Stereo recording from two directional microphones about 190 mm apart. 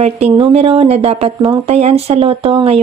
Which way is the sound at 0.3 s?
30° right (ahead or behind).